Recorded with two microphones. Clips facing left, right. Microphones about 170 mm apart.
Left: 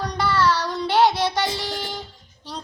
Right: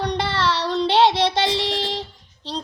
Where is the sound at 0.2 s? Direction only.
25° right (ahead or behind).